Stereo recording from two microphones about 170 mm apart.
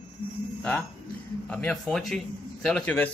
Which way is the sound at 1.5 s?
5° left (ahead or behind).